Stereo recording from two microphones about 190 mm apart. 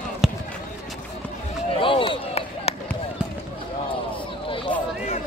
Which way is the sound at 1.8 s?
30° left (ahead or behind).